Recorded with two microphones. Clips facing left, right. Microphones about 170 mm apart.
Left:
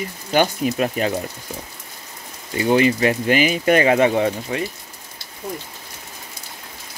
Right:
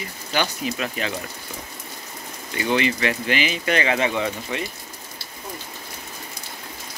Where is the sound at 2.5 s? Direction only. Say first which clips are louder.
Left 6 dB; 40° left (ahead or behind).